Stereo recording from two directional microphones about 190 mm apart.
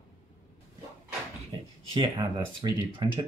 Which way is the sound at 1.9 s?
25° right (ahead or behind).